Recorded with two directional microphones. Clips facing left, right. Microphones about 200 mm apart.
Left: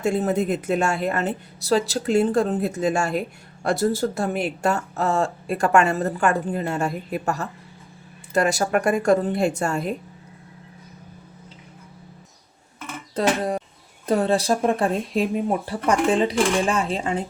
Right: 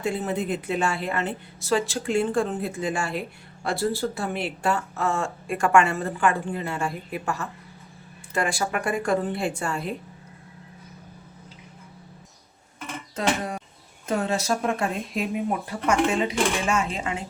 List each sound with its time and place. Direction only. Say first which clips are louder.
0.0 s a woman's voice: left 5 dB; 45° left (ahead or behind)
13.1 s speech: left 5 dB; 35° left (ahead or behind)